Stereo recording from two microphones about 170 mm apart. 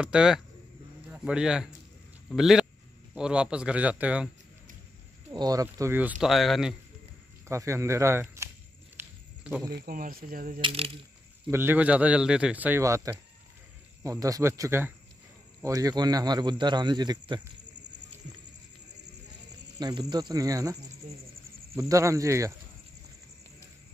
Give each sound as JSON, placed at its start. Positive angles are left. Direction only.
{"t": 0.0, "sound": "a man's voice", "side_deg": -5}
{"t": 5.3, "sound": "a man's voice", "side_deg": -20}
{"t": 7.4, "sound": "speech", "side_deg": -15}
{"t": 8.9, "sound": "a sound", "side_deg": -10}
{"t": 9.7, "sound": "speech", "side_deg": -65}
{"t": 10.6, "sound": "speech", "side_deg": -35}
{"t": 11.5, "sound": "a man's voice", "side_deg": -10}
{"t": 19.8, "sound": "a man's voice", "side_deg": -25}